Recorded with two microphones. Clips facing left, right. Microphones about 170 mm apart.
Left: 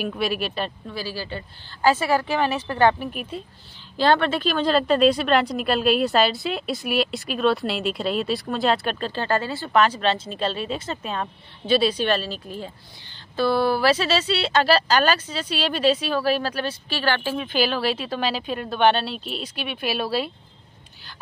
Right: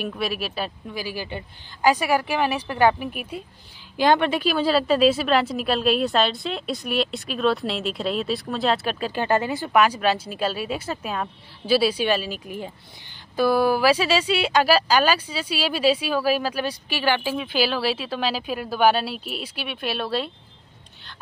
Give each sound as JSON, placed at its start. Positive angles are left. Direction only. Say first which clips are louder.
{"t": 0.0, "sound": "speech", "louder": "left 2 dB", "side_deg": 0}
{"t": 0.9, "sound": "speech", "louder": "right 1 dB", "side_deg": -15}
{"t": 9.1, "sound": "speech", "louder": "right 4 dB", "side_deg": -15}